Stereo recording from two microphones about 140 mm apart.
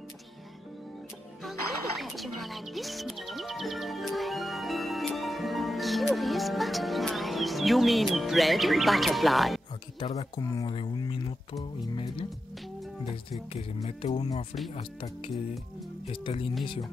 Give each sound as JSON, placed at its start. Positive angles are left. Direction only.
{"t": 1.4, "sound": "speech", "side_deg": 0}
{"t": 9.9, "sound": "speech", "side_deg": 45}
{"t": 10.3, "sound": "speech", "side_deg": 25}
{"t": 13.3, "sound": "speech", "side_deg": 45}